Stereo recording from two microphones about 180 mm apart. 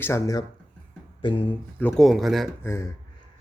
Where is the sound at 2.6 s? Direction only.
15° left (ahead or behind).